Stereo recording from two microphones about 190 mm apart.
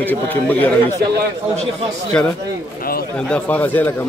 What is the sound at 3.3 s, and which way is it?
Speech, 10° left (ahead or behind).